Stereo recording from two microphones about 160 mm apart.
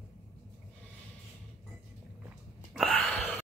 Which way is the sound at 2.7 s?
Centre (ahead or behind).